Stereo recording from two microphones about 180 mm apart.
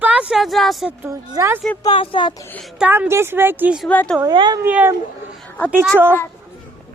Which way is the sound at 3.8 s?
5° left (ahead or behind).